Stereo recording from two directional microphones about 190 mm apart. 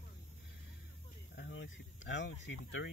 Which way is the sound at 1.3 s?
70° left (ahead or behind).